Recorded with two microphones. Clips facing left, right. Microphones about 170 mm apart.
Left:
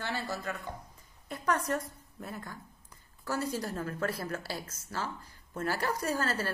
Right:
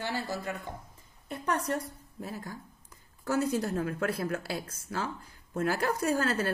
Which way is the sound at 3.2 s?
55° right (ahead or behind).